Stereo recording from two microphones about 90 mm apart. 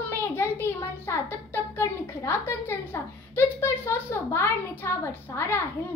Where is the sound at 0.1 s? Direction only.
25° left (ahead or behind).